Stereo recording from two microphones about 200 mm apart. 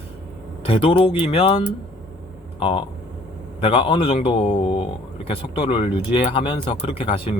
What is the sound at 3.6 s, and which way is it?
Speech, 25° left (ahead or behind).